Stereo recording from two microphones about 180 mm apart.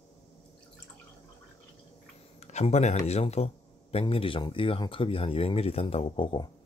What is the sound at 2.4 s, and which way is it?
Speech, 40° left (ahead or behind).